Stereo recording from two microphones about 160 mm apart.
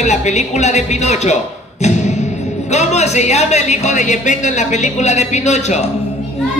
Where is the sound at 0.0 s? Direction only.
45° left (ahead or behind).